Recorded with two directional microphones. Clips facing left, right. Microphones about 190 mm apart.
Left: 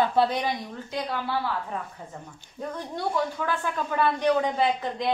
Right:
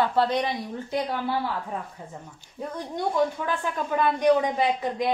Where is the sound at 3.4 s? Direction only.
15° right (ahead or behind).